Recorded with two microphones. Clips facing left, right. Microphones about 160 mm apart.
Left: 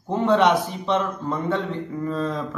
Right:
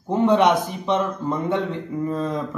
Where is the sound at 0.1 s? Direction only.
15° right (ahead or behind).